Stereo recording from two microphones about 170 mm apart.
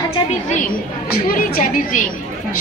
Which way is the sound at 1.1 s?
60° left (ahead or behind).